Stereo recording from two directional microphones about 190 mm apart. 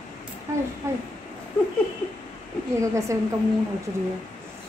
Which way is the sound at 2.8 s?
15° right (ahead or behind).